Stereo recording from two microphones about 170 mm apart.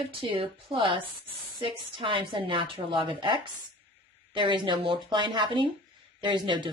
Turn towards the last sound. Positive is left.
turn(degrees=-25)  # may be behind; listen again after turning